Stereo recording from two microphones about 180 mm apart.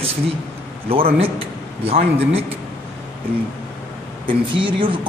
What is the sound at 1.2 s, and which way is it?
A man's voice, 30° right (ahead or behind).